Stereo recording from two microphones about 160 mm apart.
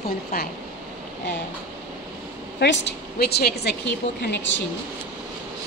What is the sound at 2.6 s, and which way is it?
A woman's voice, 90° left.